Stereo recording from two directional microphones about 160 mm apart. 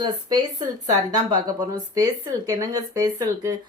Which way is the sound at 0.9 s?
25° right (ahead or behind).